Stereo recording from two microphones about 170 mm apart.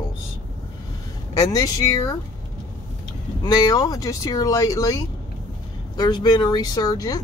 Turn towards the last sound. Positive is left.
turn(degrees=20)  # may be behind; listen again after turning